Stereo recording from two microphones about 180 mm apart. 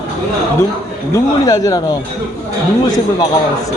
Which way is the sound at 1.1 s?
20° left (ahead or behind).